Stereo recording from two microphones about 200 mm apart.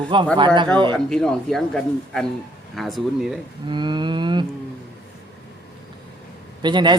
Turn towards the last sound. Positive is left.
turn(degrees=-25)  # may be behind; listen again after turning